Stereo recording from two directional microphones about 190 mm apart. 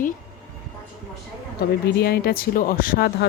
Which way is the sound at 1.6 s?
55° left (ahead or behind).